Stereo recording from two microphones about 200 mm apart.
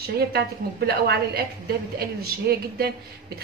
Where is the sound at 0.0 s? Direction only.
50° right (ahead or behind).